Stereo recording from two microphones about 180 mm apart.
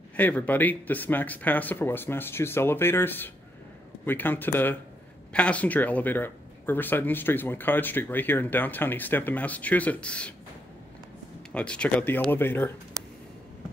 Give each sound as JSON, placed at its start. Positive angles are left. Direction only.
{"t": 0.1, "sound": "speech", "side_deg": 10}
{"t": 11.5, "sound": "speech", "side_deg": 5}